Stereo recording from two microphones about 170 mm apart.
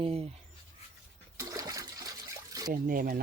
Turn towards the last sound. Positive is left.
turn(degrees=-55)  # may be behind; listen again after turning